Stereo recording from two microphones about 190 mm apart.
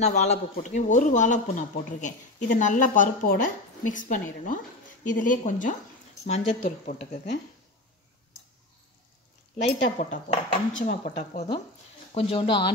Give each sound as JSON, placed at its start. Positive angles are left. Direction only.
{"t": 0.0, "sound": "a woman's voice", "side_deg": 35}
{"t": 9.8, "sound": "speech", "side_deg": 40}